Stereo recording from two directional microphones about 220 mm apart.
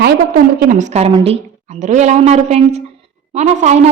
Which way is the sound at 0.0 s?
35° right (ahead or behind).